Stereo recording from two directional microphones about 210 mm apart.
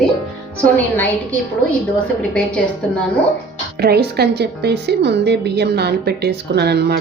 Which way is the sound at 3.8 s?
50° right (ahead or behind).